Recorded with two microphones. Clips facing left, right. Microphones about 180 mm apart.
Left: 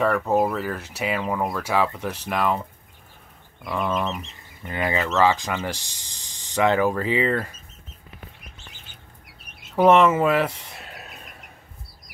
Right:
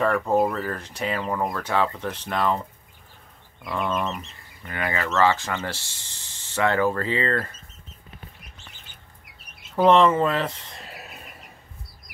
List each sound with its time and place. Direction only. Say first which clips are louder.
0.0 s speech: even; 5° left (ahead or behind)
3.6 s bird: left 1 dB; centre (ahead or behind)
4.6 s speech: left 3 dB; 20° left (ahead or behind)
9.8 s speech: left 1 dB; 5° left (ahead or behind)
10.9 s a sound: even; centre (ahead or behind)